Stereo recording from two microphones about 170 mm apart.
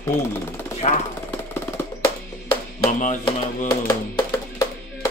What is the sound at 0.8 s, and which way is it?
Speech, 40° left (ahead or behind).